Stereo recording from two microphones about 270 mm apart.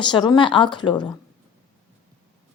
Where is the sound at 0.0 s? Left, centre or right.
Centre.